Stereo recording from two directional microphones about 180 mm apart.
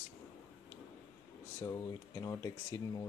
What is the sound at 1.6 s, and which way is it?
Speech, 20° left (ahead or behind).